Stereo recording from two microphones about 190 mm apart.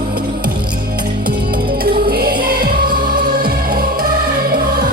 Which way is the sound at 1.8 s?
50° right (ahead or behind).